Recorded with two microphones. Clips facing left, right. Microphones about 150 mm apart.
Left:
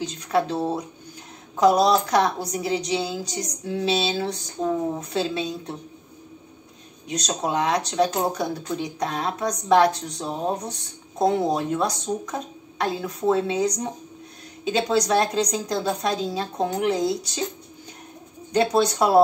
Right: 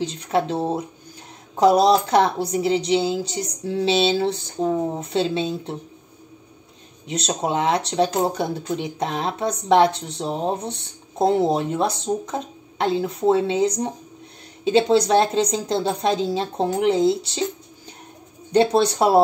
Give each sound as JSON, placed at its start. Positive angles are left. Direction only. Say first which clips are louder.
{"t": 0.0, "sound": "speech", "louder": "right 1 dB", "side_deg": -25}
{"t": 7.1, "sound": "speech", "louder": "right 2 dB", "side_deg": -25}
{"t": 18.5, "sound": "speech", "louder": "right 3 dB", "side_deg": -30}